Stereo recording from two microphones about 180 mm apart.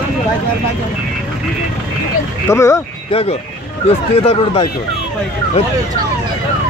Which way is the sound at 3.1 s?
35° left (ahead or behind).